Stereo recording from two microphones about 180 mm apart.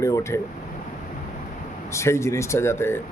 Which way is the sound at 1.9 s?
15° left (ahead or behind).